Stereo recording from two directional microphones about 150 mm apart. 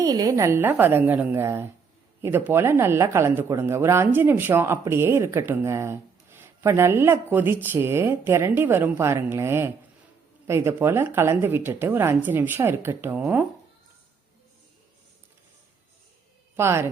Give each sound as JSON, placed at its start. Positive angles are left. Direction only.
{"t": 0.0, "sound": "speech", "side_deg": -25}
{"t": 16.6, "sound": "speech", "side_deg": -15}